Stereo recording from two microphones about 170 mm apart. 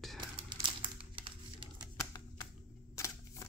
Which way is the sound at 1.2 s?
30° right (ahead or behind).